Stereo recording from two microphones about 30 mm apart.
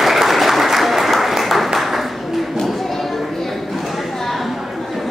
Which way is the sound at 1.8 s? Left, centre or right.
Centre.